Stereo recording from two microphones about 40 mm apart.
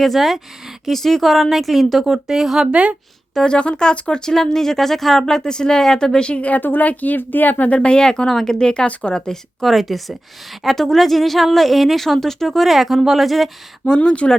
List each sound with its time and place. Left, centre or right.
0.0 s speech: centre
2.1 s speech: centre
3.4 s speech: left
4.3 s speech: centre
6.6 s speech: left
7.7 s speech: left
8.3 s speech: centre
8.5 s speech: left
9.6 s speech: centre
12.0 s speech: centre
12.6 s speech: centre
13.8 s speech: left